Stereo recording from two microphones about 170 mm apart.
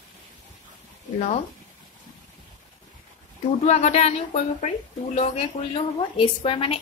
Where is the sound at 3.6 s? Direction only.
40° left (ahead or behind).